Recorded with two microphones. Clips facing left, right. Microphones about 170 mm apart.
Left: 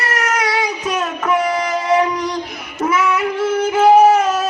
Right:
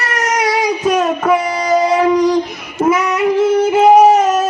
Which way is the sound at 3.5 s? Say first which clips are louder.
Right 5 dB; 35° right (ahead or behind).